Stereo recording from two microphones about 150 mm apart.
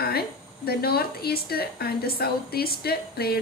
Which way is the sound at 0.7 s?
90° left.